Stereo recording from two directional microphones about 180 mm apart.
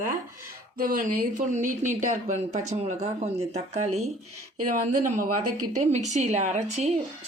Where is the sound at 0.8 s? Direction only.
50° right (ahead or behind).